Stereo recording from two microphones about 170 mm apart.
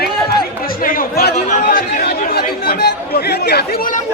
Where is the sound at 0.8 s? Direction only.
55° left (ahead or behind).